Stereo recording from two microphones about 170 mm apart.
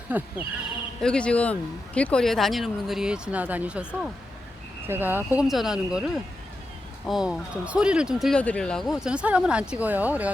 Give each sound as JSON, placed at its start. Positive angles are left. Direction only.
{"t": 0.1, "sound": "speech", "side_deg": -10}
{"t": 1.0, "sound": "speech", "side_deg": 5}
{"t": 7.0, "sound": "speech", "side_deg": 0}